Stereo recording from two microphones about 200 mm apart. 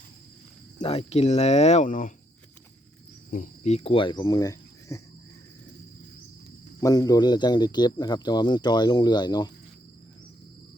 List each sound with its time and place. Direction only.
0.8 s speech: 30° left (ahead or behind)
3.2 s speech: 40° left (ahead or behind); by 5.0 s 15° left (ahead or behind)
6.7 s speech: 20° left (ahead or behind)